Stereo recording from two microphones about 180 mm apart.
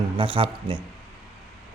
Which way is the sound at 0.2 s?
30° right (ahead or behind).